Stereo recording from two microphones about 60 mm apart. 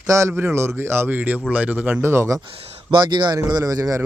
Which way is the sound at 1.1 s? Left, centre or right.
Right.